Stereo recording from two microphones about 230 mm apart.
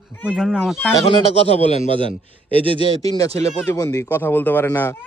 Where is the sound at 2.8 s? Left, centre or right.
Left.